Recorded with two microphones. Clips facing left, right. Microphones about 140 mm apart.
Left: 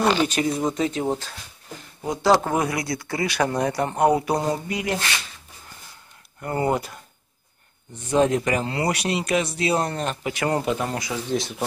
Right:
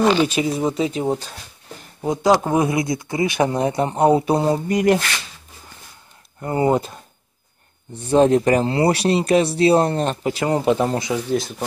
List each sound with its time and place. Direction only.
0.0 s speech: 5° right (ahead or behind)
2.0 s speech: 20° right (ahead or behind)
4.6 s speech: 50° right (ahead or behind)
6.4 s speech: 20° right (ahead or behind)
11.2 s speech: centre (ahead or behind)